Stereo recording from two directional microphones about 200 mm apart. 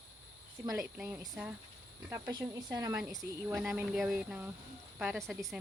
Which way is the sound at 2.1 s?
15° right (ahead or behind).